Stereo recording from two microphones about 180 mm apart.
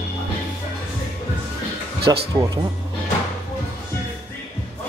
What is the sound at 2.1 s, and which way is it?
Speech, 20° right (ahead or behind).